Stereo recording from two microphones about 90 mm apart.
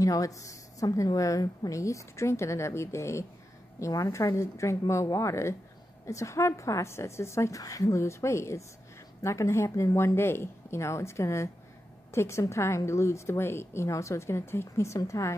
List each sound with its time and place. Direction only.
0.0 s a woman's voice: 40° left (ahead or behind)